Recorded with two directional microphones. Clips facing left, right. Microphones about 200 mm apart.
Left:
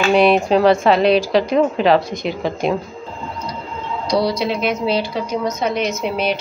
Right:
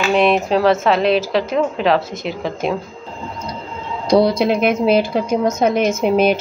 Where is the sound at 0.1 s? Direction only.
Centre (ahead or behind).